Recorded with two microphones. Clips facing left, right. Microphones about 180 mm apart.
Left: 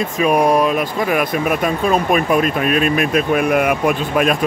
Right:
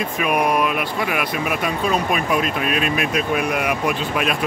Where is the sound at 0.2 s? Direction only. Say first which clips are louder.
Left 6 dB; 30° left (ahead or behind).